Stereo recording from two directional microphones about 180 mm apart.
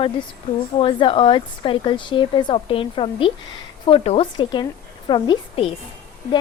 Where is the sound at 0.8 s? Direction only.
30° left (ahead or behind).